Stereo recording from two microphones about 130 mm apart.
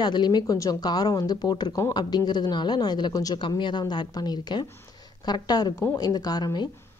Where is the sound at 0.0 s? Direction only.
35° left (ahead or behind).